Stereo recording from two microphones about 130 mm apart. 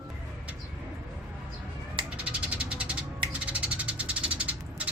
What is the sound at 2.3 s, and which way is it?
Cat, 10° right (ahead or behind).